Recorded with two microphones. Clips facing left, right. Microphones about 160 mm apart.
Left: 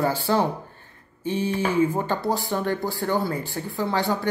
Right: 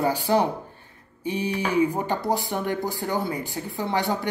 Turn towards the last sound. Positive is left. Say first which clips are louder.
# left 1 dB
turn(degrees=-20)  # may be behind; listen again after turning